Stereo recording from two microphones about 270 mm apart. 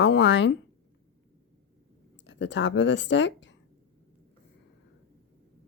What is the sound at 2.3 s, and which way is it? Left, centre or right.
Speech, left.